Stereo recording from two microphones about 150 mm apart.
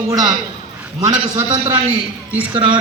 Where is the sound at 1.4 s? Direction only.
35° right (ahead or behind).